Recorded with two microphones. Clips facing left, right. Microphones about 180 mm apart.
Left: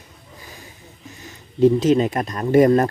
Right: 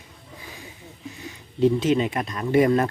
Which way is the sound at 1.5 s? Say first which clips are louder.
Left 5 dB; 40° left (ahead or behind).